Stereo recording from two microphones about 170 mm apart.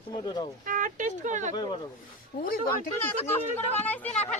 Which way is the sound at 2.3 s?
50° left (ahead or behind).